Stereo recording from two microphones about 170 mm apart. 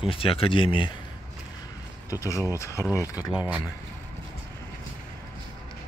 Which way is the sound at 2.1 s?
20° left (ahead or behind).